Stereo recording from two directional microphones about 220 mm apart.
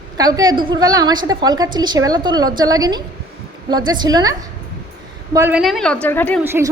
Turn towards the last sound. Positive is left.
turn(degrees=-10)  # may be behind; listen again after turning